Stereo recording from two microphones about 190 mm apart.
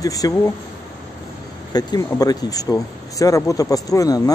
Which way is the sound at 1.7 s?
20° left (ahead or behind).